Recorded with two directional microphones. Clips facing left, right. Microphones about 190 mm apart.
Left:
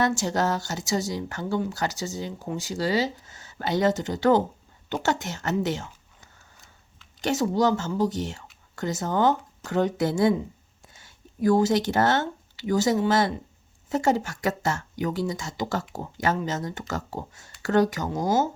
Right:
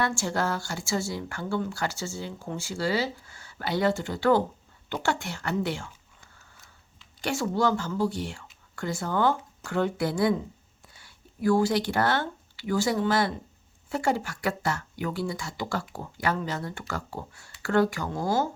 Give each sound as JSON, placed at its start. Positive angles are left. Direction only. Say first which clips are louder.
{"t": 0.0, "sound": "speech", "louder": "left 4 dB", "side_deg": 20}